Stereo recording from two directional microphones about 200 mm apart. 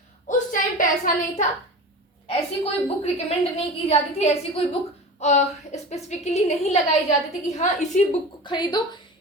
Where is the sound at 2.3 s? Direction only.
30° left (ahead or behind).